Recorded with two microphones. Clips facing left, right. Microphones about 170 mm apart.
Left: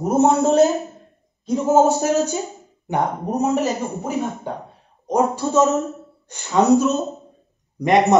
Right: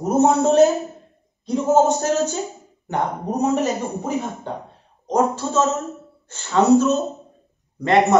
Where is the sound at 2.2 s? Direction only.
15° left (ahead or behind).